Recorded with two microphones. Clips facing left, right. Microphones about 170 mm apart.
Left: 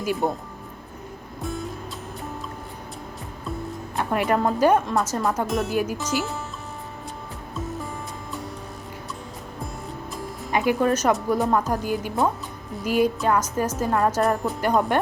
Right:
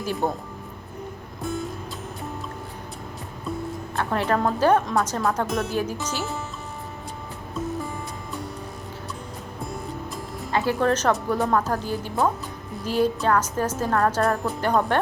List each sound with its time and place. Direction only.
0.2 s speech: 10° left (ahead or behind)
1.4 s music: centre (ahead or behind)
3.9 s speech: 10° left (ahead or behind)
10.5 s speech: 15° left (ahead or behind)